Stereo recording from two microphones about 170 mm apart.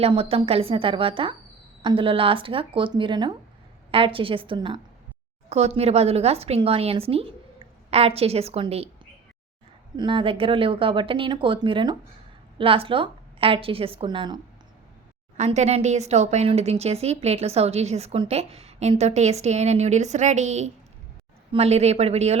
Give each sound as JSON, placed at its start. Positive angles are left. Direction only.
{"t": 0.0, "sound": "speech", "side_deg": -35}
{"t": 5.5, "sound": "speech", "side_deg": -40}
{"t": 10.0, "sound": "speech", "side_deg": -30}
{"t": 15.4, "sound": "speech", "side_deg": -40}